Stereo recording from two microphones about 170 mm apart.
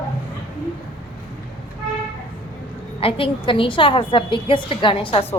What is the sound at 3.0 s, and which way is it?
A woman's voice, 30° left (ahead or behind).